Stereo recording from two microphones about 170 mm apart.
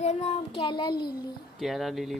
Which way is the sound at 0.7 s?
25° left (ahead or behind).